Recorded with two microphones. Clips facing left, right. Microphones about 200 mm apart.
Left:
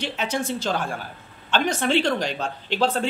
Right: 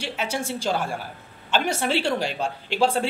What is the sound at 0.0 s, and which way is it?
A woman's voice, 10° right (ahead or behind).